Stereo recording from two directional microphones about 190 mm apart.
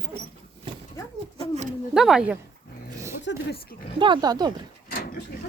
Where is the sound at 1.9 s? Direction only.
5° right (ahead or behind).